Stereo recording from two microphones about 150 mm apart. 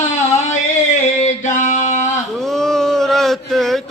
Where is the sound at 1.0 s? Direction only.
55° left (ahead or behind).